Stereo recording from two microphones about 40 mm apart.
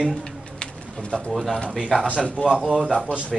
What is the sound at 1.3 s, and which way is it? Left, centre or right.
Speech, centre.